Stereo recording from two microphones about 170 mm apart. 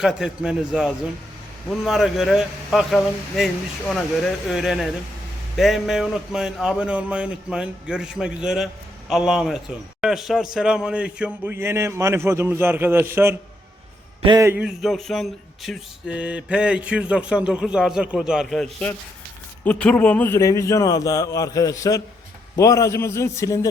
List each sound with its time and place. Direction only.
0.0 s a man's voice: 5° right (ahead or behind)
14.2 s a man's voice: 30° right (ahead or behind)
14.6 s a man's voice: centre (ahead or behind); by 23.6 s 20° left (ahead or behind)